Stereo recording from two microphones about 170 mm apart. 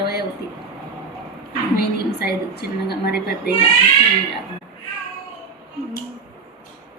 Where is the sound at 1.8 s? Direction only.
70° left (ahead or behind).